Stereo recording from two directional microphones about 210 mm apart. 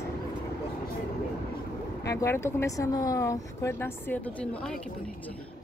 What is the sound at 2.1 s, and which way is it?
Speech, 15° left (ahead or behind).